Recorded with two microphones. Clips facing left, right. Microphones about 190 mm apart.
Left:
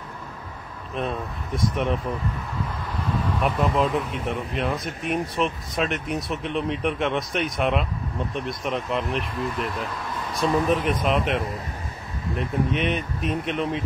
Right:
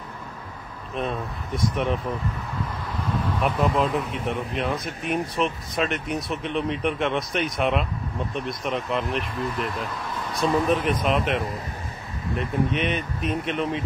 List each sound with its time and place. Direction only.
0.9 s speech: centre (ahead or behind)